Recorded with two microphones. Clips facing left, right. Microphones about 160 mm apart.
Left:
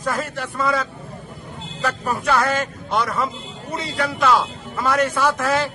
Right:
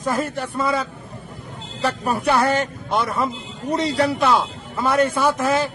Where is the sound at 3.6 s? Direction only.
40° right (ahead or behind).